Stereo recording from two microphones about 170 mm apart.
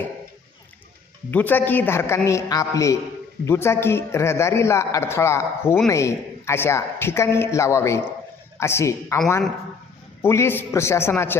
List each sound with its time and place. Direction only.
1.3 s a man's voice: 10° left (ahead or behind)
10.2 s a man's voice: 15° left (ahead or behind)